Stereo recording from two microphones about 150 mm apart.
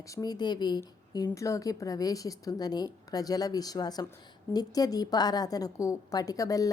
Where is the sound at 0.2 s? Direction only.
25° left (ahead or behind).